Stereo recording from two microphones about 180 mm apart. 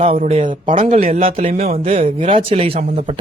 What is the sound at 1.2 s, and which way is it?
Speech, 35° right (ahead or behind).